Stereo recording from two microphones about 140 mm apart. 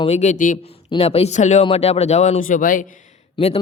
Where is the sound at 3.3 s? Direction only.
45° left (ahead or behind).